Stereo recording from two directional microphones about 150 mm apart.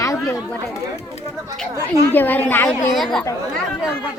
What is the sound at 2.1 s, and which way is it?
Speech, 10° left (ahead or behind).